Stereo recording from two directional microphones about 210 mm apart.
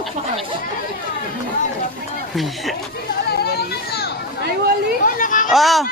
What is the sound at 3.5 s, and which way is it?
Children playing, 50° left (ahead or behind).